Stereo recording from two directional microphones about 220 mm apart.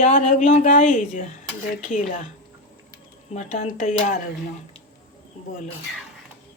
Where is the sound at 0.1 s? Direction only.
35° left (ahead or behind).